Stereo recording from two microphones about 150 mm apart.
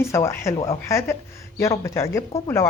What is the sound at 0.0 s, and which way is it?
A woman's voice, 20° left (ahead or behind).